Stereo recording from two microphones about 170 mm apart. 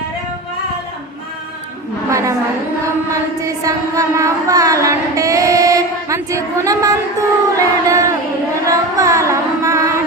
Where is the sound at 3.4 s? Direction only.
20° right (ahead or behind).